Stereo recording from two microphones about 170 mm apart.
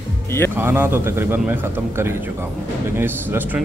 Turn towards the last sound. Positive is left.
turn(degrees=-10)  # may be behind; listen again after turning